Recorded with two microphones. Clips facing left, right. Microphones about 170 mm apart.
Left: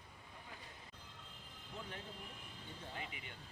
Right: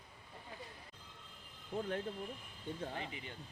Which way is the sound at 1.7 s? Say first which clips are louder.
Right 11 dB; 55° right (ahead or behind).